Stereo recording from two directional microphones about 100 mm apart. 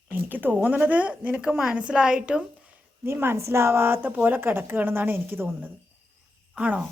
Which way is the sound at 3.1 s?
25° right (ahead or behind).